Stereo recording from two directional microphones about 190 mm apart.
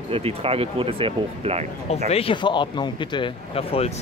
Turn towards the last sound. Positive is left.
turn(degrees=30)  # may be behind; listen again after turning